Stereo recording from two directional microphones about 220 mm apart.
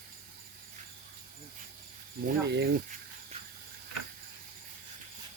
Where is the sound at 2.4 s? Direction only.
50° right (ahead or behind).